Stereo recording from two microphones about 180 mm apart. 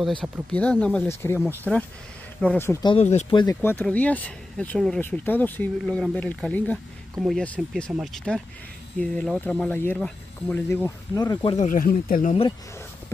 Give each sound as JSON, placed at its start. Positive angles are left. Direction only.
{"t": 0.2, "sound": "speech", "side_deg": 5}
{"t": 2.8, "sound": "speech", "side_deg": 30}
{"t": 3.6, "sound": "speech", "side_deg": 10}
{"t": 11.5, "sound": "speech", "side_deg": 45}